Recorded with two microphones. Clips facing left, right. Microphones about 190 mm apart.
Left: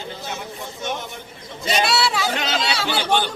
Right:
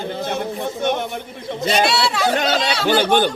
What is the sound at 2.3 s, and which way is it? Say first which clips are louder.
Speech: right 5 dB; 50° right (ahead or behind).